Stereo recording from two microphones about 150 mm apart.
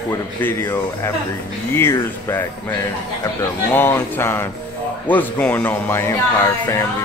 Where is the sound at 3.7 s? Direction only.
15° left (ahead or behind).